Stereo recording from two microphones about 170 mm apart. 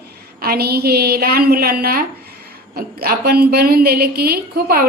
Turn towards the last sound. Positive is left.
turn(degrees=-60)  # may be behind; listen again after turning